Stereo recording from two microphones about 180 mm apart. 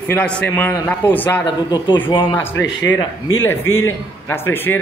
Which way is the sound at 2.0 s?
30° left (ahead or behind).